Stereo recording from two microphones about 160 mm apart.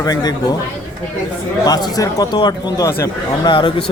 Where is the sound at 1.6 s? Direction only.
25° left (ahead or behind).